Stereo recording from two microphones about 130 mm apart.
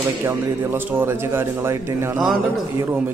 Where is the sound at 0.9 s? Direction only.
20° right (ahead or behind).